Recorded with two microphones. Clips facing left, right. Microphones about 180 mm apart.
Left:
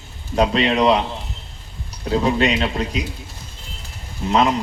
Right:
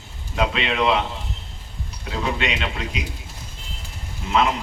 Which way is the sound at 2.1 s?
40° left (ahead or behind).